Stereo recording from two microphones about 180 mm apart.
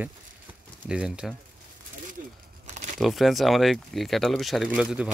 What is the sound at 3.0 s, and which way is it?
Speech, centre (ahead or behind).